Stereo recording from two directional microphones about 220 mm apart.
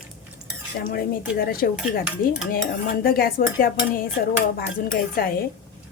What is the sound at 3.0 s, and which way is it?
Speech, 40° left (ahead or behind).